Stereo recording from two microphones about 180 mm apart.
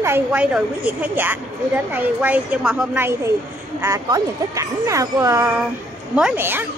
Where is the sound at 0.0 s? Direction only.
10° right (ahead or behind).